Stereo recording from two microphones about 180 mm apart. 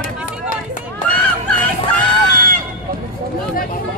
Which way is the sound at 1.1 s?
5° left (ahead or behind).